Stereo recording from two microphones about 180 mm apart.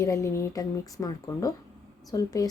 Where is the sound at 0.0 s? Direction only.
15° left (ahead or behind).